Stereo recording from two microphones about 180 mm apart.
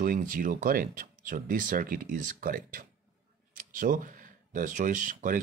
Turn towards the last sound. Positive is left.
turn(degrees=-45)  # may be behind; listen again after turning